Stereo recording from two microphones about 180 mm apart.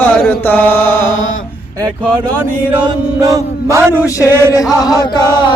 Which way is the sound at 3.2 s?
20° right (ahead or behind).